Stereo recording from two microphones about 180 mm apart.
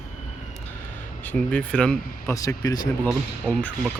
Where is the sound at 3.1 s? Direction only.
Centre (ahead or behind).